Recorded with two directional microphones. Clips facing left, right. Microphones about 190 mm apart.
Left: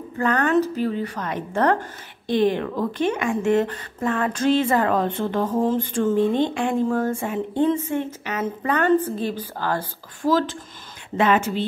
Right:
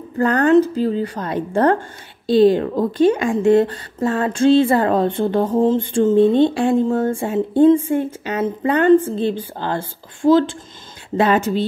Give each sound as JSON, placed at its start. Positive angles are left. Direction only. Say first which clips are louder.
{"t": 0.2, "sound": "a woman's voice", "louder": "right 6 dB", "side_deg": -35}